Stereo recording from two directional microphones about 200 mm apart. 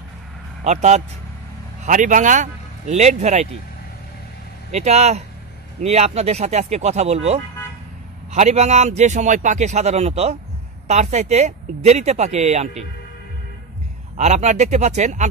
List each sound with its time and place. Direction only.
0.7 s a man's voice: 35° right (ahead or behind)
4.6 s a man's voice: 35° right (ahead or behind)
14.1 s a man's voice: 35° right (ahead or behind)